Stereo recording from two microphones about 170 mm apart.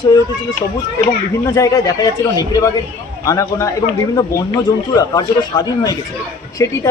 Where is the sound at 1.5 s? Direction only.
20° left (ahead or behind).